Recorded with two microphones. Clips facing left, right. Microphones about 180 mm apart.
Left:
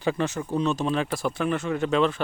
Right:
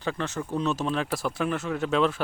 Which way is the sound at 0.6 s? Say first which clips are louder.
Left 2 dB; centre (ahead or behind).